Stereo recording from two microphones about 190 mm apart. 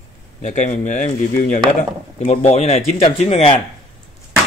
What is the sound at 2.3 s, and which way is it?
Speech, 35° left (ahead or behind).